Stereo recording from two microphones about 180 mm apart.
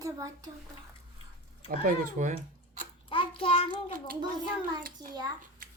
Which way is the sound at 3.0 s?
30° left (ahead or behind).